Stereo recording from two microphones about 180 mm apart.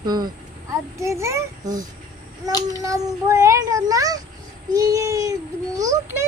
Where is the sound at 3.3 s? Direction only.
15° right (ahead or behind).